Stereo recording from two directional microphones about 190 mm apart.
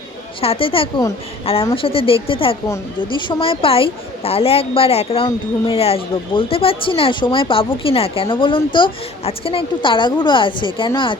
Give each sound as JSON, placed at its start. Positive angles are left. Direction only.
{"t": 0.4, "sound": "a woman's voice", "side_deg": 30}